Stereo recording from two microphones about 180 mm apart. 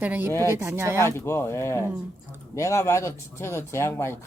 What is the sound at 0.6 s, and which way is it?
Speech, 15° right (ahead or behind).